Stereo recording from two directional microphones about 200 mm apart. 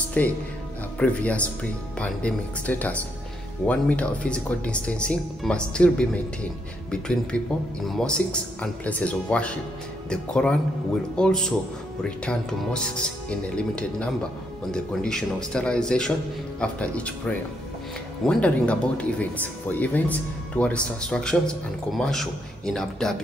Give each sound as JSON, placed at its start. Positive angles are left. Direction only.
{"t": 0.2, "sound": "speech", "side_deg": 5}
{"t": 7.3, "sound": "speech", "side_deg": 5}
{"t": 18.2, "sound": "speech", "side_deg": 5}